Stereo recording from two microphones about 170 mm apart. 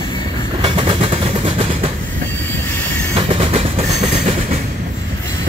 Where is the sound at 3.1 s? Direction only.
35° right (ahead or behind).